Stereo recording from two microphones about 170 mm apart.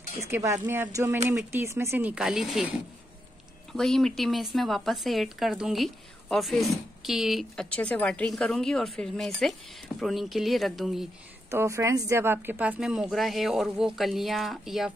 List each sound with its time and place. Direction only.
0.2 s speech: 15° right (ahead or behind)
3.7 s speech: centre (ahead or behind)
11.5 s speech: 15° right (ahead or behind); by 14.9 s centre (ahead or behind)